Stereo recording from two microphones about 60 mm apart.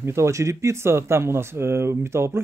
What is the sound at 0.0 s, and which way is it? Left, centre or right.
Speech, right.